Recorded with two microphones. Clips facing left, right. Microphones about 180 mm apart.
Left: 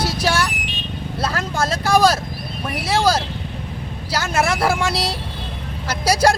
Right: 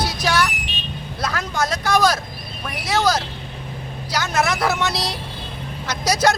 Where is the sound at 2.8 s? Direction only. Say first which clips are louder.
Left 1 dB; 30° left (ahead or behind).